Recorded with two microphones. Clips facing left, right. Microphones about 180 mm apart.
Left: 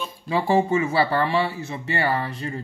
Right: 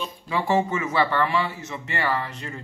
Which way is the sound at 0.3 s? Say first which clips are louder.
Left 3 dB; 30° left (ahead or behind).